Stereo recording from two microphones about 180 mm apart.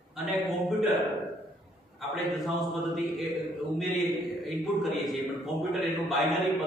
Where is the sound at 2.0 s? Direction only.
Centre (ahead or behind).